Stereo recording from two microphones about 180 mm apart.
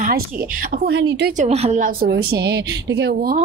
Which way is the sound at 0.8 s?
60° right (ahead or behind).